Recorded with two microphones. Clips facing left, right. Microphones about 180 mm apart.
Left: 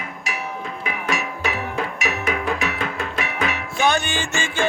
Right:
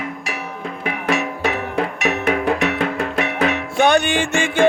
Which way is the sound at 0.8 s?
60° right (ahead or behind).